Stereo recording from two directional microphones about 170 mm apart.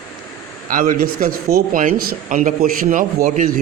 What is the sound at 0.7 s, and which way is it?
Speech, 55° right (ahead or behind).